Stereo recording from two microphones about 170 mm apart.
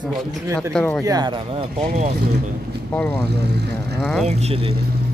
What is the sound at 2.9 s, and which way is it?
Speech, 10° left (ahead or behind).